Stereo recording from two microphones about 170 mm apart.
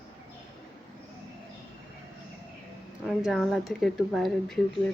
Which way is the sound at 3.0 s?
Centre (ahead or behind).